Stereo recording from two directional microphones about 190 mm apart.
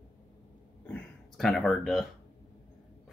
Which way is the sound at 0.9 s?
Centre (ahead or behind).